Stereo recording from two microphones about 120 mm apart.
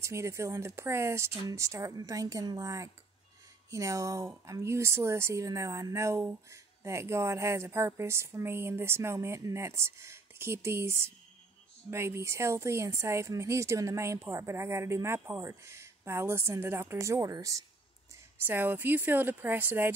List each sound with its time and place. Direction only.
0.0 s a woman's voice: 25° right (ahead or behind)
18.4 s speech: 15° right (ahead or behind)